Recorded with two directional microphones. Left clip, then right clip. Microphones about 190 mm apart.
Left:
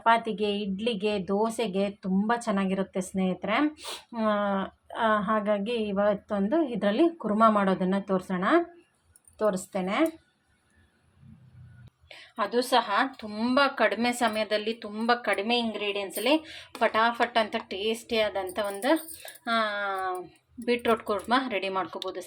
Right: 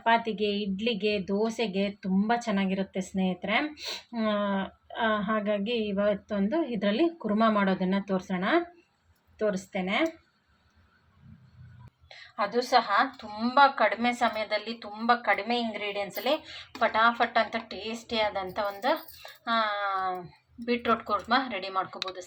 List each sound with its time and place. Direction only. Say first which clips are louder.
0.0 s a woman's voice: left 1 dB; 15° left (ahead or behind)
13.0 s speech: right 1 dB; 30° left (ahead or behind)
16.0 s speech: left 5 dB; 30° left (ahead or behind)